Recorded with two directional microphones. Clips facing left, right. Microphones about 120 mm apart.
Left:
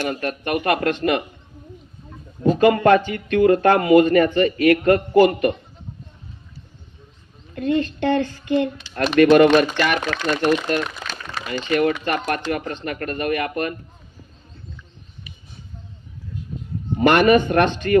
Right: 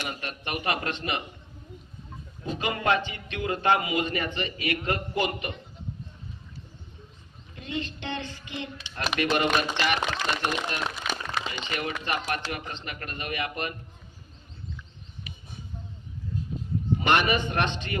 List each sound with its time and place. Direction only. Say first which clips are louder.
0.1 s a man's voice: left 11 dB; 50° left (ahead or behind)
2.4 s a man's voice: left 14 dB; 50° left (ahead or behind)
7.5 s a man's voice: left 13 dB; 50° left (ahead or behind)
11.0 s a sound: even; 15° right (ahead or behind)
11.7 s a man's voice: left 12 dB; 50° left (ahead or behind)
17.0 s a man's voice: left 11 dB; 45° left (ahead or behind)